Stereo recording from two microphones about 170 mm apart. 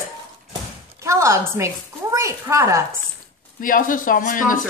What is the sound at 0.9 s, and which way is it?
Speech, 15° right (ahead or behind).